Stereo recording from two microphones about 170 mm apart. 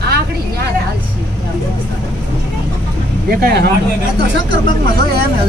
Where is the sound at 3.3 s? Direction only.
65° right (ahead or behind).